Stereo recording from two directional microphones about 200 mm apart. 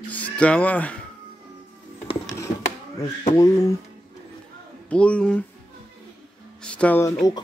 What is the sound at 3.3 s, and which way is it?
Speech, 15° left (ahead or behind).